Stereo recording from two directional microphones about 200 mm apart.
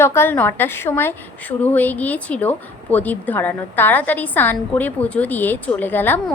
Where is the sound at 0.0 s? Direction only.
10° left (ahead or behind).